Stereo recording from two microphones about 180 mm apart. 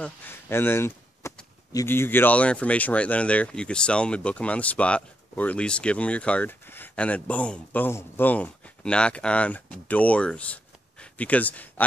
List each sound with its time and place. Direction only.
0.0 s speech: 10° left (ahead or behind)